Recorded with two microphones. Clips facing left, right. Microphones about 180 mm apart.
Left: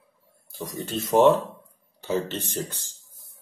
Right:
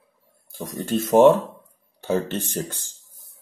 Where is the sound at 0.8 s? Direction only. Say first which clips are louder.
Right 4 dB; 50° right (ahead or behind).